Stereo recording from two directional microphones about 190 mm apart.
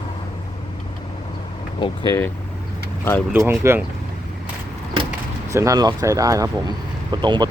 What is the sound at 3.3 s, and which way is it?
Speech, 10° right (ahead or behind).